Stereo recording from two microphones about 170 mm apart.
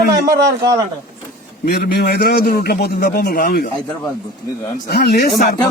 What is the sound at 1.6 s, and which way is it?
A man's voice, 65° left (ahead or behind).